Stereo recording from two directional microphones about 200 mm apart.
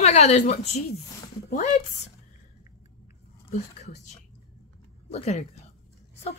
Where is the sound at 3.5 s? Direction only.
35° left (ahead or behind).